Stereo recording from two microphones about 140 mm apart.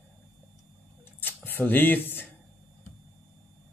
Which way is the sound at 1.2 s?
15° left (ahead or behind).